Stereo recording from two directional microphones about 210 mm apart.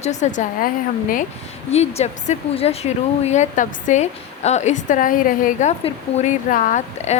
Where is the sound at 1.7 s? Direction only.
30° left (ahead or behind).